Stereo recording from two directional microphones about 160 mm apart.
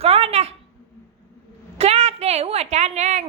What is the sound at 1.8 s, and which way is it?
A woman's voice, 40° right (ahead or behind).